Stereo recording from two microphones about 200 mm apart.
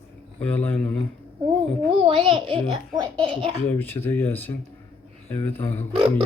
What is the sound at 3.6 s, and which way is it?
Speech, 10° left (ahead or behind).